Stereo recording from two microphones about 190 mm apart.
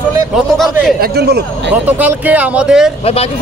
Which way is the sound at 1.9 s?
10° right (ahead or behind).